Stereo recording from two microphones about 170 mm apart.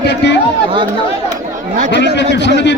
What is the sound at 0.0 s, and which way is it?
Chatter, 90° left.